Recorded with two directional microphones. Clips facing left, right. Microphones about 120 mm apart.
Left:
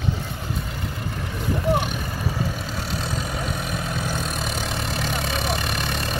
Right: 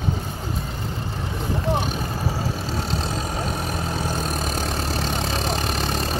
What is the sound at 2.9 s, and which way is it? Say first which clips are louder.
Vehicle: right 2 dB; 30° right (ahead or behind).